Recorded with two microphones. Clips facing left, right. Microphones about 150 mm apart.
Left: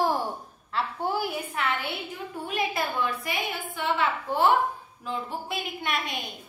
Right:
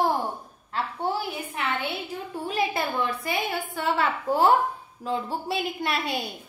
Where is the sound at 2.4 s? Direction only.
30° right (ahead or behind).